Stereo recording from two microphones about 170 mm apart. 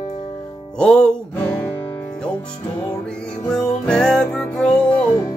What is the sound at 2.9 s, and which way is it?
Music, 5° left (ahead or behind).